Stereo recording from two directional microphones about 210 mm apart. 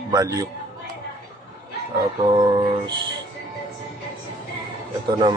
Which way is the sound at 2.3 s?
20° right (ahead or behind).